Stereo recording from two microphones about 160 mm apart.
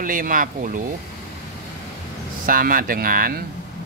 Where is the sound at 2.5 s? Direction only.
60° right (ahead or behind).